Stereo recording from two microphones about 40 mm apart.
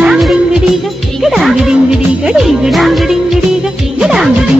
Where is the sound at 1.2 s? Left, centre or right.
Centre.